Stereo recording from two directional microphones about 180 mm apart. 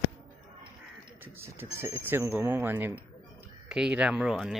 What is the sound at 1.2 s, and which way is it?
Speech, 15° right (ahead or behind).